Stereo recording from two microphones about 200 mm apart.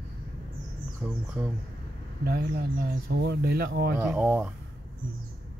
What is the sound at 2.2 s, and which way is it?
Speech, 50° right (ahead or behind).